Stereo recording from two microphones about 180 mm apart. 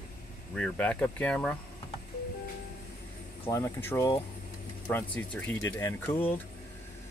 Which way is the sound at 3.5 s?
15° left (ahead or behind).